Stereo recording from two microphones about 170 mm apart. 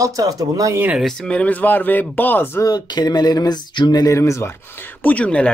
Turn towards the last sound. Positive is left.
turn(degrees=5)  # may be behind; listen again after turning